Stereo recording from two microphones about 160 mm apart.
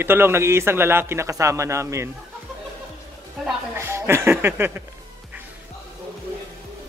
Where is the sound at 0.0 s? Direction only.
15° right (ahead or behind).